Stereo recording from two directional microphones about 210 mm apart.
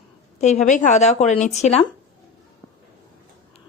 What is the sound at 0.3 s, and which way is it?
Speech, 35° left (ahead or behind).